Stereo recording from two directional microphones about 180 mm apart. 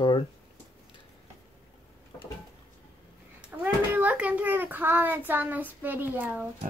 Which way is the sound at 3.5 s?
10° right (ahead or behind).